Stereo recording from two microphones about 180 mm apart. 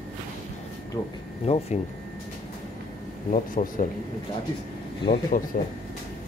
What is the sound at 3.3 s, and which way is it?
Speech, 40° left (ahead or behind).